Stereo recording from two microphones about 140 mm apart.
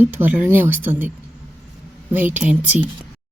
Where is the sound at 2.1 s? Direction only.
15° right (ahead or behind).